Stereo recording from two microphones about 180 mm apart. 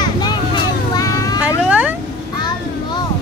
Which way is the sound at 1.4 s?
10° right (ahead or behind).